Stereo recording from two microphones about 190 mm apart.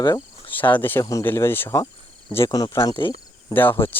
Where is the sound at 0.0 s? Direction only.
20° left (ahead or behind).